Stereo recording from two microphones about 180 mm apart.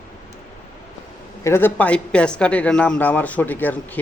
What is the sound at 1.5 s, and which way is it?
Speech, 10° left (ahead or behind).